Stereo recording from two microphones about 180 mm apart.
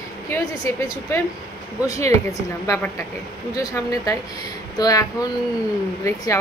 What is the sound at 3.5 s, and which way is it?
A woman's voice, 20° left (ahead or behind).